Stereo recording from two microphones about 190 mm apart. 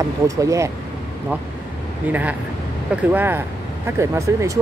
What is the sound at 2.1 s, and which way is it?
Speech, 10° right (ahead or behind).